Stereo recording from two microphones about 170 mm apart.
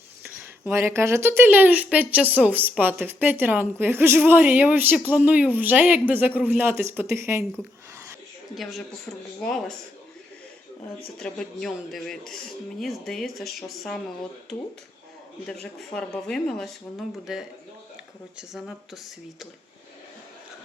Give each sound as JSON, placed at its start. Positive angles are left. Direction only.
{"t": 0.6, "sound": "speech", "side_deg": -15}
{"t": 8.5, "sound": "speech", "side_deg": 0}
{"t": 11.2, "sound": "speech", "side_deg": 5}
{"t": 15.6, "sound": "speech", "side_deg": 5}